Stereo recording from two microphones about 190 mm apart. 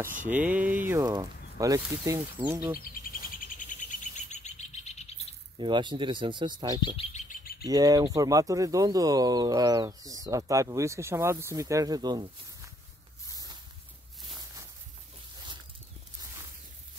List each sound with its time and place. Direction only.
0.2 s speech: 10° right (ahead or behind)
3.3 s bird: 40° left (ahead or behind)
5.6 s speech: 25° right (ahead or behind)
7.0 s bird: 40° left (ahead or behind)
7.6 s speech: 20° right (ahead or behind)
14.4 s a sound: 20° right (ahead or behind)